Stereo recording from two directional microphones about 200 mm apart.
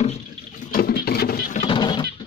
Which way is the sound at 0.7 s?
50° left (ahead or behind).